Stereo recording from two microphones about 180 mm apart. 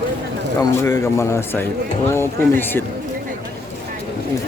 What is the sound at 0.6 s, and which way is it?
Speech, 15° left (ahead or behind).